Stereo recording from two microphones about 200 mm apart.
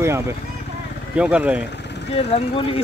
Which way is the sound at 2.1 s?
30° left (ahead or behind).